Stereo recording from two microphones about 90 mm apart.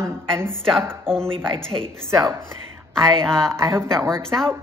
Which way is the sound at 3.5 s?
30° right (ahead or behind).